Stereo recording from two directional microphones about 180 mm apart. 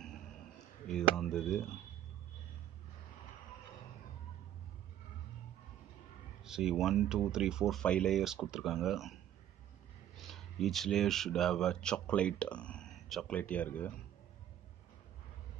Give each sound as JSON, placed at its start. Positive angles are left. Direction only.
{"t": 0.8, "sound": "speech", "side_deg": 5}
{"t": 6.4, "sound": "speech", "side_deg": -5}
{"t": 10.1, "sound": "speech", "side_deg": 0}